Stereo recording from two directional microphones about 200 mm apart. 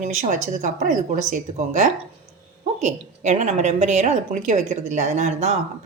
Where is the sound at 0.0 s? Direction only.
35° right (ahead or behind).